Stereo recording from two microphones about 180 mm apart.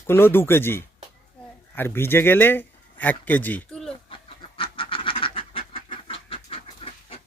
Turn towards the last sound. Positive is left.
turn(degrees=30)  # may be behind; listen again after turning